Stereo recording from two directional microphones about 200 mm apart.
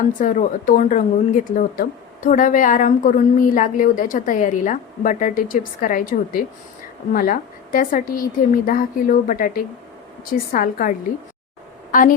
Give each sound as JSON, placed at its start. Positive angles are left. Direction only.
{"t": 0.2, "sound": "a woman's voice", "side_deg": 40}